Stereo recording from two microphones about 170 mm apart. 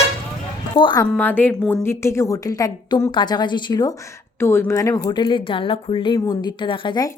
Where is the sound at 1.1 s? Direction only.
10° left (ahead or behind).